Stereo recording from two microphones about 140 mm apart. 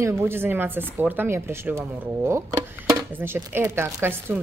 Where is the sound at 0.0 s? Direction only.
15° right (ahead or behind).